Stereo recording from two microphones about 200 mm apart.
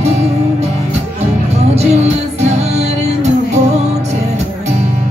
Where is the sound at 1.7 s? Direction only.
35° right (ahead or behind).